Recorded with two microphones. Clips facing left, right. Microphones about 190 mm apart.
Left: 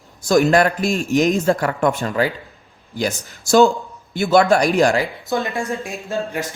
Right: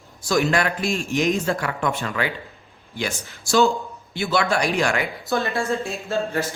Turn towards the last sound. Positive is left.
turn(degrees=15)  # may be behind; listen again after turning